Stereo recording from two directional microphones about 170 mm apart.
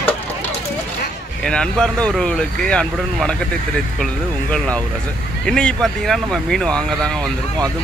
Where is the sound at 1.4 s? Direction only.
5° left (ahead or behind).